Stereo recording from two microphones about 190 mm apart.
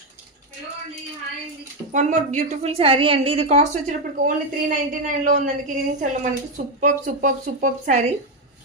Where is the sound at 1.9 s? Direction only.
40° right (ahead or behind).